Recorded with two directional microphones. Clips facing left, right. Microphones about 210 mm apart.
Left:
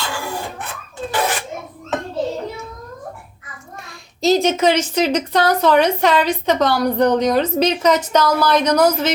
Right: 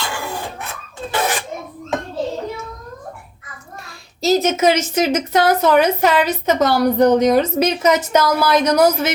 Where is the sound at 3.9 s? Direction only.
5° right (ahead or behind).